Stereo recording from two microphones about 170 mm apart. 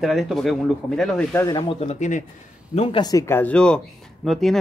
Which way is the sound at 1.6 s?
35° left (ahead or behind).